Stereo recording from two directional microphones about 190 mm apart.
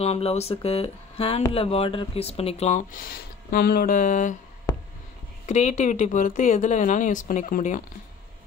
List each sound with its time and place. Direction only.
0.0 s speech: 35° left (ahead or behind)
5.5 s speech: 40° left (ahead or behind)